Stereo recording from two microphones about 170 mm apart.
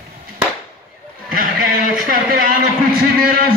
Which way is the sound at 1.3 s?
55° right (ahead or behind).